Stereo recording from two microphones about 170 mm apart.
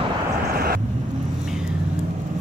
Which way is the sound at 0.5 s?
60° right (ahead or behind).